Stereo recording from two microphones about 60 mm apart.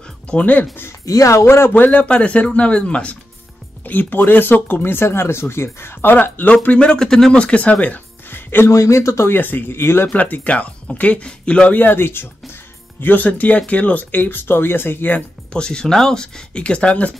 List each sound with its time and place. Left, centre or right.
0.3 s speech: left
1.0 s speech: left
1.4 s speech: left
1.7 s speech: left
3.8 s speech: left; by 7.3 s centre
7.3 s speech: centre
8.3 s music: left
8.6 s speech: left
9.3 s speech: left
10.0 s speech: left
13.0 s speech: left
15.5 s speech: centre